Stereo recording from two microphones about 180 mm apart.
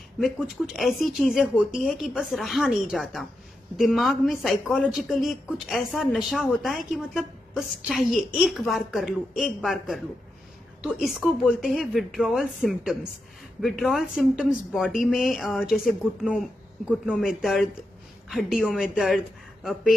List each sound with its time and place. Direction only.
0.7 s a woman's voice: centre (ahead or behind)